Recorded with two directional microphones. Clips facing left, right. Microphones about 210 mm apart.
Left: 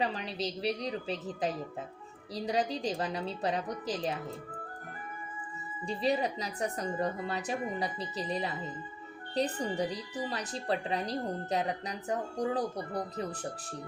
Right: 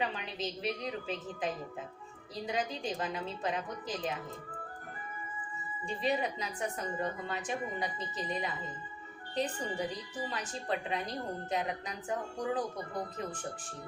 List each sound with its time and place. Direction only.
0.0 s a woman's voice: 35° left (ahead or behind)
5.8 s a woman's voice: 35° left (ahead or behind)